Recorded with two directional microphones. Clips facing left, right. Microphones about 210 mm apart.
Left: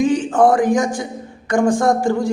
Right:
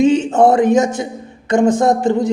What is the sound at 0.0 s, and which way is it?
A man's voice, 25° right (ahead or behind).